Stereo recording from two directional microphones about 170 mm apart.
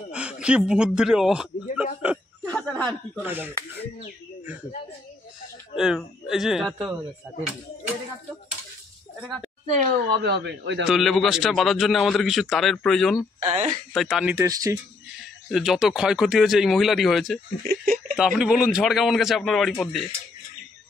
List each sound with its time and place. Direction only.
0.1 s speech: 5° right (ahead or behind)
2.4 s chuckle: 10° left (ahead or behind)
3.2 s speech: 10° right (ahead or behind)
5.8 s a man's voice: centre (ahead or behind)
10.1 s a man's voice: 75° right (ahead or behind)
10.9 s a man's voice: centre (ahead or behind)
13.4 s speech: 40° right (ahead or behind)
13.9 s a man's voice: centre (ahead or behind)
14.3 s speech: 20° right (ahead or behind)
15.5 s a man's voice: centre (ahead or behind)
17.6 s speech: 55° right (ahead or behind)
18.1 s a man's voice: 5° right (ahead or behind)